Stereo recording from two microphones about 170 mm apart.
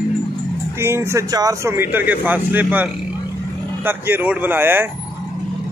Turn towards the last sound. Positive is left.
turn(degrees=-10)  # may be behind; listen again after turning